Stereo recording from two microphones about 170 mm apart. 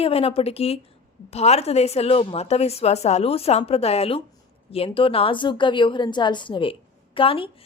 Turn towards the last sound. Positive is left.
turn(degrees=30)  # may be behind; listen again after turning